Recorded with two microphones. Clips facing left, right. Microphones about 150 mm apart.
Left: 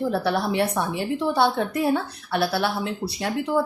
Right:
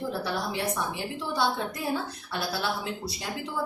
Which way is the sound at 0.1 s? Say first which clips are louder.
Left 7 dB; 65° left (ahead or behind).